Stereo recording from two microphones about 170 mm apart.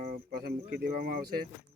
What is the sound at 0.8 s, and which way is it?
Speech, 60° right (ahead or behind).